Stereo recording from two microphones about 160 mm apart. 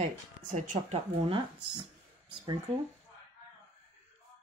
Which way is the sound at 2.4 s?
30° right (ahead or behind).